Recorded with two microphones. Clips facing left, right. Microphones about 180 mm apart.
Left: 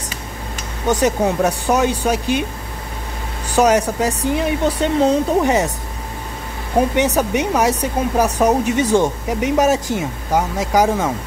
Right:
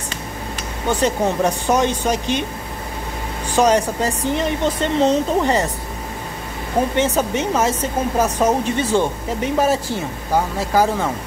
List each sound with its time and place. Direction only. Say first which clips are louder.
0.8 s speech: left 2 dB; 15° left (ahead or behind)
3.5 s speech: left 1 dB; 10° left (ahead or behind)
7.2 s speech: left 2 dB; 15° left (ahead or behind)